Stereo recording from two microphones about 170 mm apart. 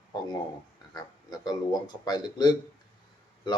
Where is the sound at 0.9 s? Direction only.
25° left (ahead or behind).